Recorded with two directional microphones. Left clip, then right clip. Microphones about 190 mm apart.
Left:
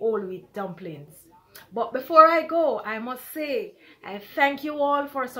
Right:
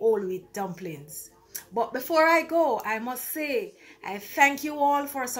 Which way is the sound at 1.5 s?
5° right (ahead or behind).